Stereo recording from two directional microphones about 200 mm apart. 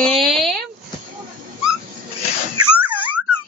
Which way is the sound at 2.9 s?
10° right (ahead or behind).